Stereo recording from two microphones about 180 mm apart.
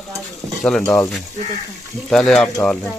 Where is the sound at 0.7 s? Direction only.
5° left (ahead or behind).